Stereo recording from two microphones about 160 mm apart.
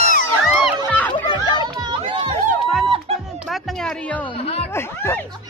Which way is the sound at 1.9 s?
30° right (ahead or behind).